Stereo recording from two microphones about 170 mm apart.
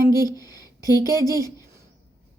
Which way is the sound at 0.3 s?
20° left (ahead or behind).